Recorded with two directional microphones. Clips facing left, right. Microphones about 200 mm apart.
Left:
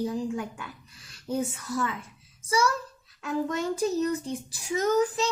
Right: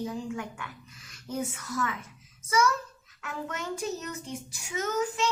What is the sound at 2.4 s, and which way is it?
Speech, 30° left (ahead or behind).